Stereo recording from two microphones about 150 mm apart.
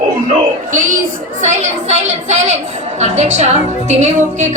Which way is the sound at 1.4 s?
50° right (ahead or behind).